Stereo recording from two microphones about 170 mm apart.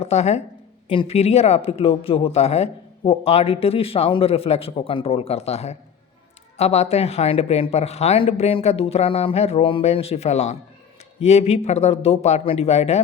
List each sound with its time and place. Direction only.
0.0 s speech: 40° left (ahead or behind)